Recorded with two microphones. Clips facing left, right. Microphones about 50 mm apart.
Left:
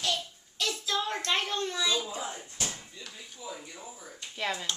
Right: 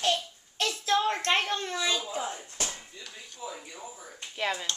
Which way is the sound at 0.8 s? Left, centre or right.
Right.